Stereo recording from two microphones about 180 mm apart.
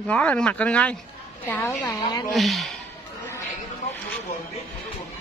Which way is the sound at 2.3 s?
Centre (ahead or behind).